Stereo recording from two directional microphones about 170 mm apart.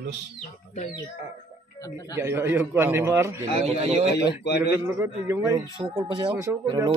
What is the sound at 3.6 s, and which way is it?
Speech, 35° right (ahead or behind).